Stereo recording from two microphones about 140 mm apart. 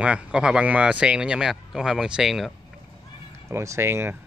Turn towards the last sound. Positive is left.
turn(degrees=-15)  # may be behind; listen again after turning